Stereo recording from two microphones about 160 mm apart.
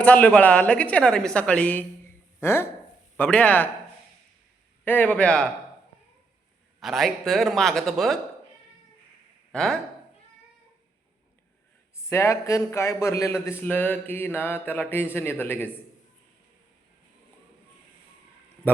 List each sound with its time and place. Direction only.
0.0 s speech: 10° left (ahead or behind)
4.9 s speech: 10° left (ahead or behind)
6.7 s a man's voice: centre (ahead or behind)
9.5 s speech: 5° left (ahead or behind)
12.0 s speech: 20° left (ahead or behind)